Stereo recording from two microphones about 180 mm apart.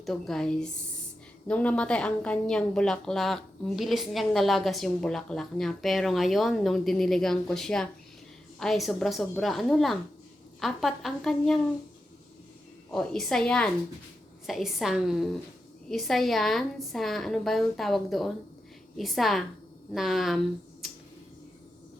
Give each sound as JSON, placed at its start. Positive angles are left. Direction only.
{"t": 0.0, "sound": "a woman's voice", "side_deg": 0}
{"t": 12.9, "sound": "a woman's voice", "side_deg": 5}